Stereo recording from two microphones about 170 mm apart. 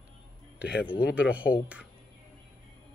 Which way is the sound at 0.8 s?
10° right (ahead or behind).